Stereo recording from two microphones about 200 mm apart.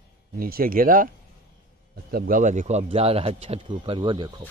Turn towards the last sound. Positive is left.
turn(degrees=-25)  # may be behind; listen again after turning